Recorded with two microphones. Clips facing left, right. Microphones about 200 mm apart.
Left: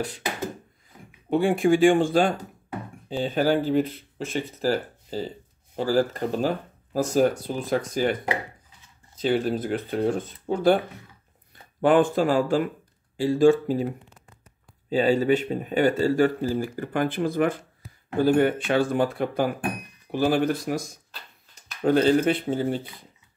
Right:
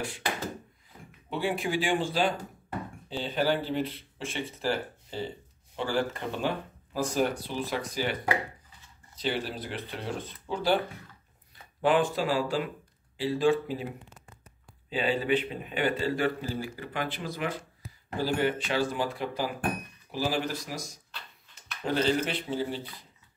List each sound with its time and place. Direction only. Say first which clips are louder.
1.3 s speech: left 10 dB; 50° left (ahead or behind)
11.8 s speech: left 6 dB; 50° left (ahead or behind)
14.9 s speech: left 7 dB; 45° left (ahead or behind)